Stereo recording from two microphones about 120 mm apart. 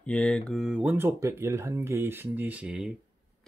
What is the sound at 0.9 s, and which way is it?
Speech, 20° right (ahead or behind).